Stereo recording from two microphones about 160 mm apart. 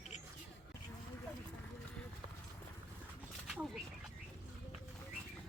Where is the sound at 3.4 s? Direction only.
5° right (ahead or behind).